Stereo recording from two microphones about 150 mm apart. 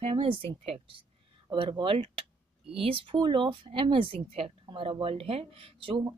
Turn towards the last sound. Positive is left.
turn(degrees=-35)  # may be behind; listen again after turning